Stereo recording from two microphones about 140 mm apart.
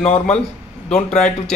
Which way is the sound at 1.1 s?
55° left (ahead or behind).